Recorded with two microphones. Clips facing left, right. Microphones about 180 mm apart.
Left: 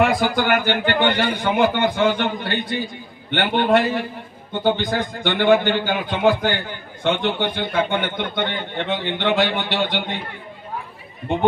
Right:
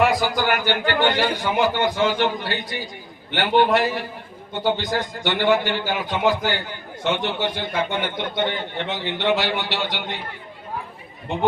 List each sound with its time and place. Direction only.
0.0 s a man's voice: 55° left (ahead or behind)